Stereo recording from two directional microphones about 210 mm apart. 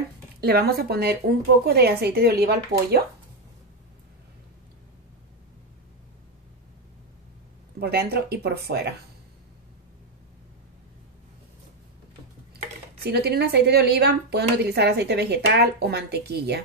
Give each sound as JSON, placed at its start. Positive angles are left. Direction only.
{"t": 0.4, "sound": "speech", "side_deg": -50}
{"t": 7.8, "sound": "speech", "side_deg": -50}
{"t": 13.0, "sound": "speech", "side_deg": -50}